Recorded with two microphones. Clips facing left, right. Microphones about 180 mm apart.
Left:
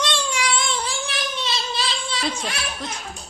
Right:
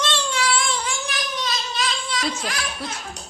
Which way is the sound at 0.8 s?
30° left (ahead or behind).